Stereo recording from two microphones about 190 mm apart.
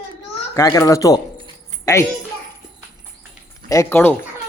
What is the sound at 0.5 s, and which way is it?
A child's voice, 15° left (ahead or behind).